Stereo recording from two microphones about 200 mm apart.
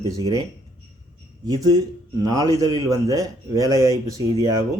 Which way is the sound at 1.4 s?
20° right (ahead or behind).